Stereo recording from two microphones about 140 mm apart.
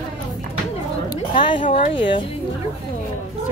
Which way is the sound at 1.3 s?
35° left (ahead or behind).